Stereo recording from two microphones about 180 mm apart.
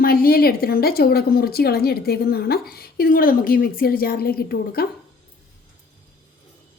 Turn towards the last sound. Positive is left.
turn(degrees=55)  # may be behind; listen again after turning